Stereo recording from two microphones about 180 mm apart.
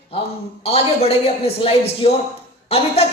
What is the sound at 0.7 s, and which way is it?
Speech, 35° left (ahead or behind).